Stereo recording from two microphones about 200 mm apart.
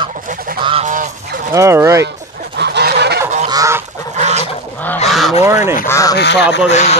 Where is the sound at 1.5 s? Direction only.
15° right (ahead or behind).